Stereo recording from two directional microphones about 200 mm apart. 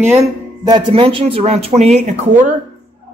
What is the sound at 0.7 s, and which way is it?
Speech, 25° right (ahead or behind).